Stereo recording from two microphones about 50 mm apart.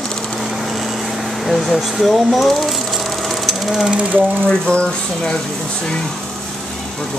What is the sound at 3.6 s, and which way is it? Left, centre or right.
Speech, centre.